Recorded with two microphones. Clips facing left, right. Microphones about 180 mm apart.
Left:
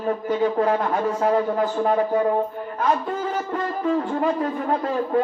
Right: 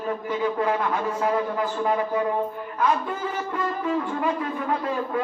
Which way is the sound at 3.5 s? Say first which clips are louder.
Left 3 dB; 40° left (ahead or behind).